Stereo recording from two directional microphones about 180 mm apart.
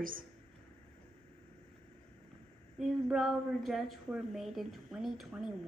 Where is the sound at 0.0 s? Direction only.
50° right (ahead or behind).